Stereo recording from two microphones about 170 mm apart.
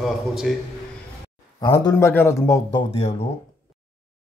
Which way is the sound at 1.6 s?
20° left (ahead or behind).